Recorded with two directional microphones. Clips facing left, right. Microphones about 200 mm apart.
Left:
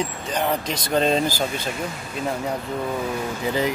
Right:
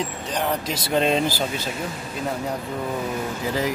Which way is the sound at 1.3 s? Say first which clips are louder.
Even; 45° left (ahead or behind).